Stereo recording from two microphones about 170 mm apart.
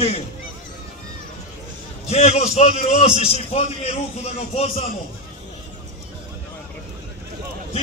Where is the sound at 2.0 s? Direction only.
40° left (ahead or behind).